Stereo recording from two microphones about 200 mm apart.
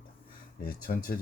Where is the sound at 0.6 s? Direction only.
45° left (ahead or behind).